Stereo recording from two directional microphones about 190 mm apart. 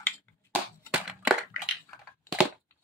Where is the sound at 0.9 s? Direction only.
5° right (ahead or behind).